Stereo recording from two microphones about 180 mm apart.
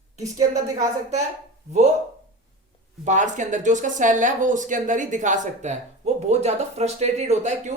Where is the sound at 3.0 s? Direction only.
45° right (ahead or behind).